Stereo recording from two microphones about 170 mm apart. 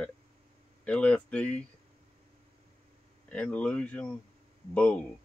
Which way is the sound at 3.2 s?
5° left (ahead or behind).